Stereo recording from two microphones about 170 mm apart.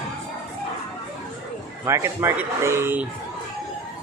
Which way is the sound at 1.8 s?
15° right (ahead or behind).